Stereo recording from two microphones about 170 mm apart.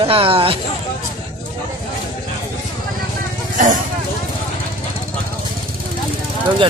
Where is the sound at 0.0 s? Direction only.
35° right (ahead or behind).